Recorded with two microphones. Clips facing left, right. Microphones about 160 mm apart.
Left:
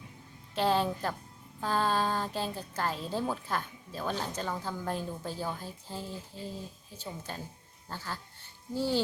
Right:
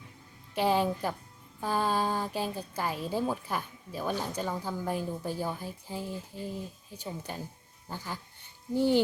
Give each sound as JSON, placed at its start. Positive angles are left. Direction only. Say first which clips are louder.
{"t": 0.5, "sound": "a woman's voice", "louder": "right 1 dB", "side_deg": -15}